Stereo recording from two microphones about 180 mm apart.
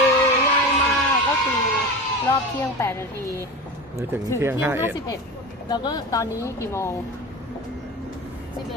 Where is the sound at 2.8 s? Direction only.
15° left (ahead or behind).